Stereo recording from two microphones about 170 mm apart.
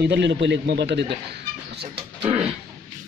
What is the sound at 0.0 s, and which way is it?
A man's voice, 90° right.